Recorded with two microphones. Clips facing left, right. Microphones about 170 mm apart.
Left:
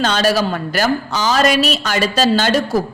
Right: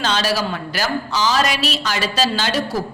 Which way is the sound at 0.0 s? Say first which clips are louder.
Left 5 dB; 50° left (ahead or behind).